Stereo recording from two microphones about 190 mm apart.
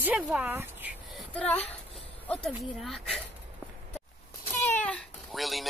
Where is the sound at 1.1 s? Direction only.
5° left (ahead or behind).